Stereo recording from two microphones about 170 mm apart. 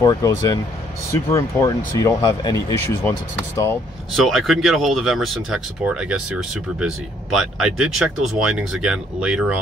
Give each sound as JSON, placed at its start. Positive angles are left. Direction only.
{"t": 0.0, "sound": "speech", "side_deg": 20}
{"t": 4.1, "sound": "speech", "side_deg": 0}